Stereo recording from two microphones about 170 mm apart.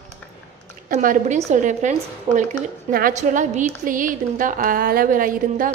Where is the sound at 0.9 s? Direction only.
45° right (ahead or behind).